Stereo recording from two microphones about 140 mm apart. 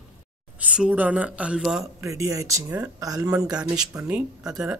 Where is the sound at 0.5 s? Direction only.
10° right (ahead or behind).